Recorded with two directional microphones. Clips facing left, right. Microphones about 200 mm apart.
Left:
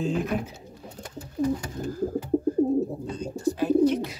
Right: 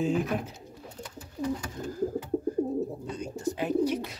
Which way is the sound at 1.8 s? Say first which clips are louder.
Left 4 dB; 35° left (ahead or behind).